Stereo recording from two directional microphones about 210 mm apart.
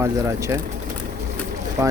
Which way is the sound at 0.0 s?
15° right (ahead or behind).